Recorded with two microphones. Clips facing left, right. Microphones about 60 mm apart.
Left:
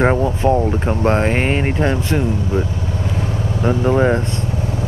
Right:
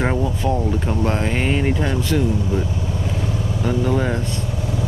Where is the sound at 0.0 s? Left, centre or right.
Left.